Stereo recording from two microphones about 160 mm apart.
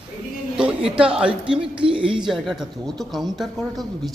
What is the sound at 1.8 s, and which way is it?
Speech, 35° right (ahead or behind).